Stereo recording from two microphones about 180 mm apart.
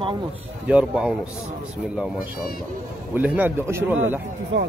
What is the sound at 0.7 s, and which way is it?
Speech, 5° right (ahead or behind).